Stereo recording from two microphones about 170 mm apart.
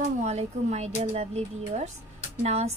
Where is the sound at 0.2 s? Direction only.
40° right (ahead or behind).